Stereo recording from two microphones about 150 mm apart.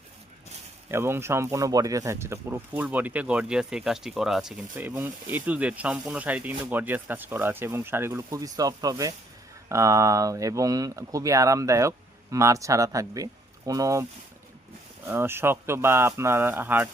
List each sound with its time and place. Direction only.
0.9 s speech: 15° right (ahead or behind)